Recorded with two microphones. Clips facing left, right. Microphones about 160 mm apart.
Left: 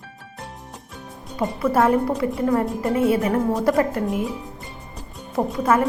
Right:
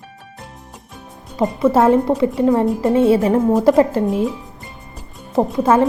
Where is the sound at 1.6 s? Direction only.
25° right (ahead or behind).